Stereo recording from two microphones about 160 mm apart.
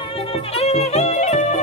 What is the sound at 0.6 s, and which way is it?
Music, 40° left (ahead or behind).